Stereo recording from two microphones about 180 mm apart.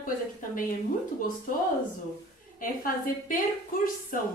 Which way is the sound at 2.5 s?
50° left (ahead or behind).